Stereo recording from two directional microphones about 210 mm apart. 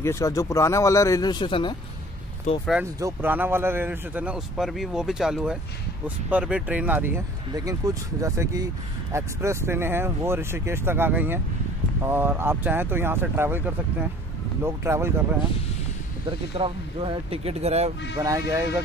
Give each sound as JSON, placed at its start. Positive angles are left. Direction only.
{"t": 0.0, "sound": "speech", "side_deg": 15}
{"t": 2.8, "sound": "a man's voice", "side_deg": -15}
{"t": 16.5, "sound": "speech", "side_deg": -25}
{"t": 18.1, "sound": "a man's voice", "side_deg": -15}